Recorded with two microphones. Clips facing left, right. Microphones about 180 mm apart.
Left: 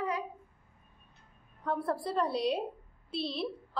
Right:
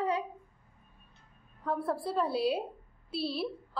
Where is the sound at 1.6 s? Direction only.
Centre (ahead or behind).